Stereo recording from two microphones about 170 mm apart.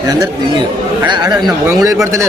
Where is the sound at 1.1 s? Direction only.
25° right (ahead or behind).